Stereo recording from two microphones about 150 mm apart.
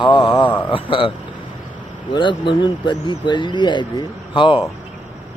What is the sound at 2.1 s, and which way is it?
Speech, 30° left (ahead or behind).